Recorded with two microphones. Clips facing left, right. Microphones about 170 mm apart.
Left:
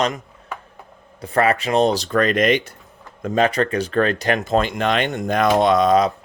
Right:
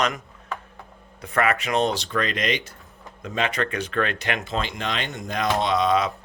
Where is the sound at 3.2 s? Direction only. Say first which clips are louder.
Left 8 dB; 40° left (ahead or behind).